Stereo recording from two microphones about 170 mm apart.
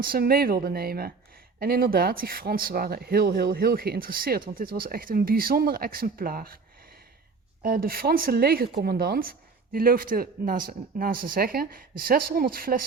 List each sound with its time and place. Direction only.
0.0 s speech: 60° right (ahead or behind)
7.6 s speech: 60° right (ahead or behind)